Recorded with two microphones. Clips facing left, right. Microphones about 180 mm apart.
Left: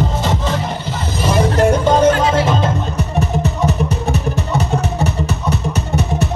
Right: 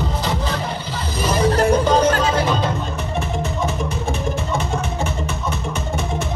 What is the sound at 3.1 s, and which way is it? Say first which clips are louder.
Music: left 4 dB; 40° left (ahead or behind).